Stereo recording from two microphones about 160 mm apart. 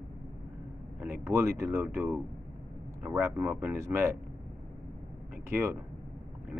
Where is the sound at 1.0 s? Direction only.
15° right (ahead or behind).